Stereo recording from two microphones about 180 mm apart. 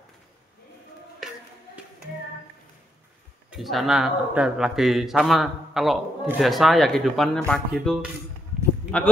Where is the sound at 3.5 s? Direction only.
Centre (ahead or behind).